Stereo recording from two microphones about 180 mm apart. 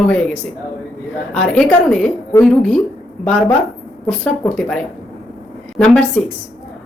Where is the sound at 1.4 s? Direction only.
5° left (ahead or behind).